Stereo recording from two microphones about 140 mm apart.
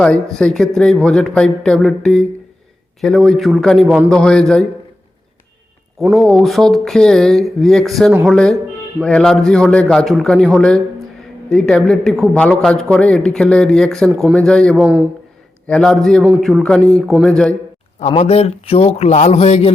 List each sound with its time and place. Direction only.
0.0 s speech: 5° left (ahead or behind)
6.1 s speech: centre (ahead or behind)
18.2 s a man's voice: 50° left (ahead or behind)